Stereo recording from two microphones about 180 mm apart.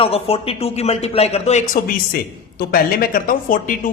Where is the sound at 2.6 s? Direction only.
55° left (ahead or behind).